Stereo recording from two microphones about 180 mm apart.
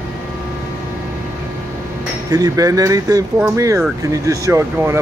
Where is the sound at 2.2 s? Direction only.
20° right (ahead or behind).